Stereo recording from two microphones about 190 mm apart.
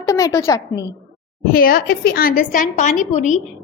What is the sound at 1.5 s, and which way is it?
A woman's voice, 50° left (ahead or behind).